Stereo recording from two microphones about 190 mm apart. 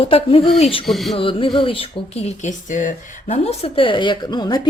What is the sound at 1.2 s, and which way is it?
A woman's voice, 25° left (ahead or behind).